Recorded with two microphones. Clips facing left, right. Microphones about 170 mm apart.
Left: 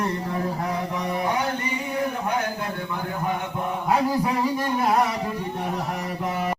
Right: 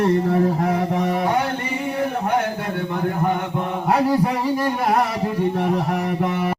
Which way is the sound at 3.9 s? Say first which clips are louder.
Right 4 dB; 65° right (ahead or behind).